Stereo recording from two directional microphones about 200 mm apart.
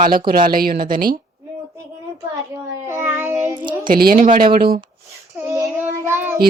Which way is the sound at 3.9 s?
45° right (ahead or behind).